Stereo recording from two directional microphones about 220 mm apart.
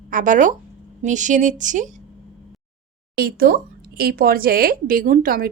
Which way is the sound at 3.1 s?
45° right (ahead or behind).